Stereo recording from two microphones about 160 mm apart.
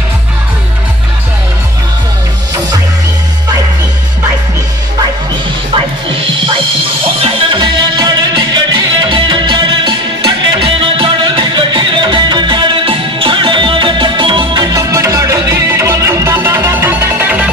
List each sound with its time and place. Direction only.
7.2 s music: 35° right (ahead or behind); by 17.5 s 10° right (ahead or behind)